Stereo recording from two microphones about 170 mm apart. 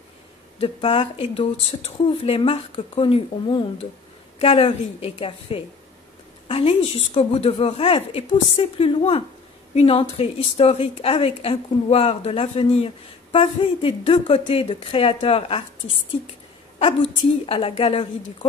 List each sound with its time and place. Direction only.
0.6 s a woman's voice: 35° left (ahead or behind)
16.8 s a woman's voice: 35° left (ahead or behind)